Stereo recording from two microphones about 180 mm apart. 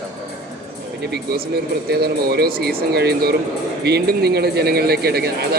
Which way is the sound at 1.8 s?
60° right (ahead or behind).